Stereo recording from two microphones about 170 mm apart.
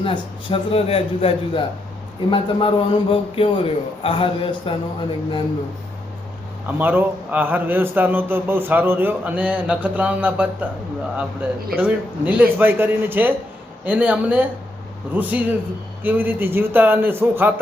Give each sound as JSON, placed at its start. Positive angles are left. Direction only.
{"t": 0.0, "sound": "a man's voice", "side_deg": 30}
{"t": 6.7, "sound": "a man's voice", "side_deg": -10}
{"t": 11.8, "sound": "a man's voice", "side_deg": -10}